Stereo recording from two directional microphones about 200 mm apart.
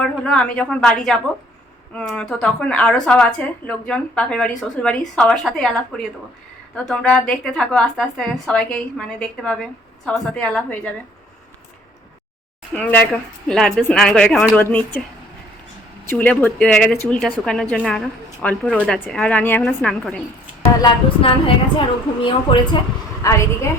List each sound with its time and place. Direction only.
0.0 s speech: 5° left (ahead or behind)
12.7 s speech: 10° left (ahead or behind)
16.0 s speech: 5° left (ahead or behind)
20.8 s a woman's voice: 25° left (ahead or behind)